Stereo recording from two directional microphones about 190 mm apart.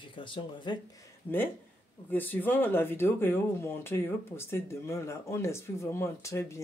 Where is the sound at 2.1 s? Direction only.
10° left (ahead or behind).